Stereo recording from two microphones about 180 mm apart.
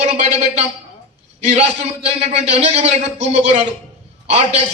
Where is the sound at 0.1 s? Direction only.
35° right (ahead or behind).